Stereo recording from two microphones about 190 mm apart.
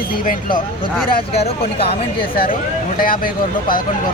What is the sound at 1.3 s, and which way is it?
Speech, 30° left (ahead or behind).